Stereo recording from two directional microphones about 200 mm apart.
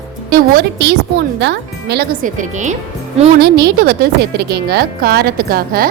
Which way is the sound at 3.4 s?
55° right (ahead or behind).